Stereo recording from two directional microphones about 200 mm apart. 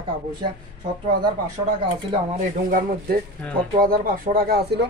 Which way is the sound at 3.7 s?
45° right (ahead or behind).